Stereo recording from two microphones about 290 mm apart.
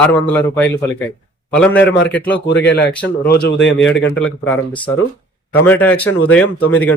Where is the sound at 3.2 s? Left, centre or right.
Left.